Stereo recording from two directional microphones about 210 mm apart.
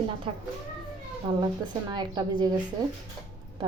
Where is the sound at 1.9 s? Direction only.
20° right (ahead or behind).